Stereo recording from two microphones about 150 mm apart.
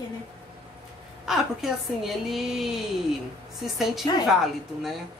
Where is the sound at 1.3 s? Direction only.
Centre (ahead or behind).